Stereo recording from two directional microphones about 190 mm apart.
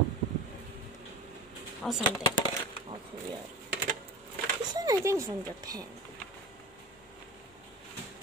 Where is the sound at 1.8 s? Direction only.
5° left (ahead or behind).